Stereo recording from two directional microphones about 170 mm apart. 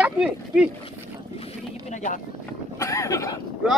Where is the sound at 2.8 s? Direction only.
20° left (ahead or behind).